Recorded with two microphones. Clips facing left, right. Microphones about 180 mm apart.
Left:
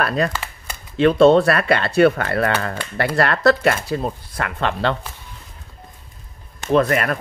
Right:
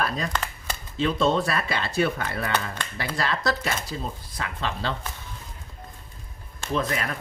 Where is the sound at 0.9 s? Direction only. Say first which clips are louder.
Left 11 dB; 65° left (ahead or behind).